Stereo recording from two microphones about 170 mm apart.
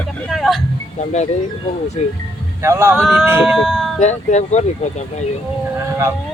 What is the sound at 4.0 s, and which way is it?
Speech, 40° left (ahead or behind).